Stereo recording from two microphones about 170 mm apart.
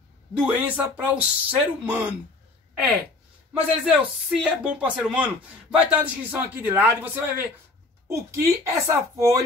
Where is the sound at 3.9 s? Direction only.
5° right (ahead or behind).